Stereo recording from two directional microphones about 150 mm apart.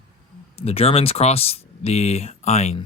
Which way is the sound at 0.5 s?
40° left (ahead or behind).